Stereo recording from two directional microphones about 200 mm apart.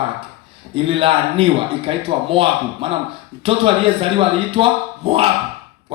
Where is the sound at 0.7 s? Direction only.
25° right (ahead or behind).